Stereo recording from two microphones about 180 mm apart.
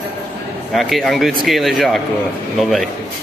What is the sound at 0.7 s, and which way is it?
A man's voice, centre (ahead or behind).